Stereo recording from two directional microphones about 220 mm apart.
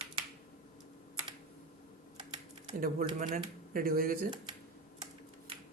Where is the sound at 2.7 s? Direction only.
40° right (ahead or behind).